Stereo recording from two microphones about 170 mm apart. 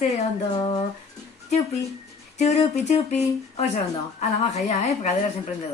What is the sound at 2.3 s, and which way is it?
Speech, 40° left (ahead or behind).